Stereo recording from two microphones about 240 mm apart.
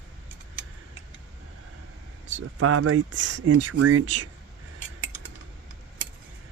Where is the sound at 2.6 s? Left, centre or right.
Right.